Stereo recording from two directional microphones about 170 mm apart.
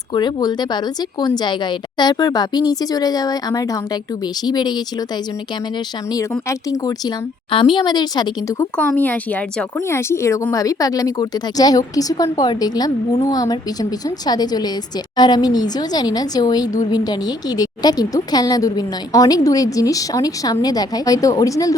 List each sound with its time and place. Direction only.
0.1 s a woman's voice: 25° left (ahead or behind)
6.5 s a woman's voice: 20° left (ahead or behind)